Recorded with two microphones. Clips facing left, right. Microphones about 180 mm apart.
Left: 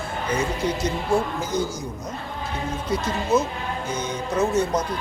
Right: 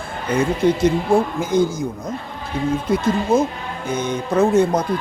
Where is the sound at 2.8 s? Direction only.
55° right (ahead or behind).